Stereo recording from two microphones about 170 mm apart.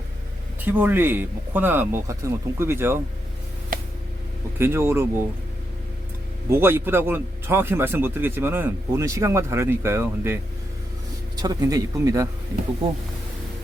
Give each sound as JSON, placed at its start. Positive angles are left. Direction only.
{"t": 0.6, "sound": "speech", "side_deg": -10}
{"t": 4.5, "sound": "speech", "side_deg": -15}
{"t": 6.5, "sound": "speech", "side_deg": -15}
{"t": 11.4, "sound": "speech", "side_deg": -20}